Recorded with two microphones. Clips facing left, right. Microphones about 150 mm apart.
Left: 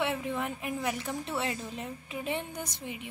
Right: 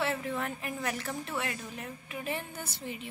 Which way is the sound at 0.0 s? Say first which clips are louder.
Left 1 dB; 15° left (ahead or behind).